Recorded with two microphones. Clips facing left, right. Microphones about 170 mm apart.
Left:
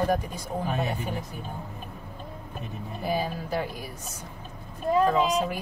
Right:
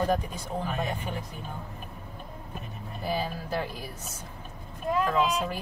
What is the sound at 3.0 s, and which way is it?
Speech, 15° left (ahead or behind).